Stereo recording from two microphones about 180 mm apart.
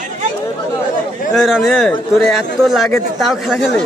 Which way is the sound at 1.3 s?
Centre (ahead or behind).